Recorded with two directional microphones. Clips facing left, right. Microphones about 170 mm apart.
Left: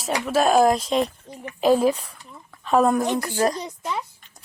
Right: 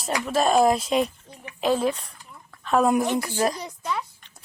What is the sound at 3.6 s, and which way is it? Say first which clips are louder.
Speech: left 1 dB; 20° left (ahead or behind).